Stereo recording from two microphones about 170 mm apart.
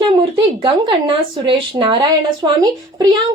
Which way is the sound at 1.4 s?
30° right (ahead or behind).